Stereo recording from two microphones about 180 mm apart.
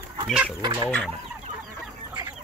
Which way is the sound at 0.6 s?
25° right (ahead or behind).